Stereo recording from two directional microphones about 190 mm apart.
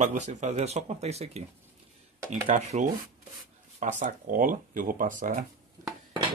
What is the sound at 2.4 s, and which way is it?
Speech, 40° right (ahead or behind).